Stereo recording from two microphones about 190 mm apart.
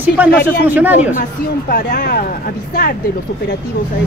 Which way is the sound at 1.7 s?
55° left (ahead or behind).